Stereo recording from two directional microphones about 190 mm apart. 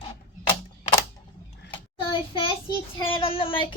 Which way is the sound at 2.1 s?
25° left (ahead or behind).